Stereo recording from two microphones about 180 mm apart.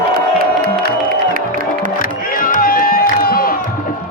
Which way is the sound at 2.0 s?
50° left (ahead or behind).